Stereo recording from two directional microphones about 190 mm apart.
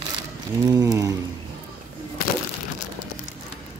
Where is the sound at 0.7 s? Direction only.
20° right (ahead or behind).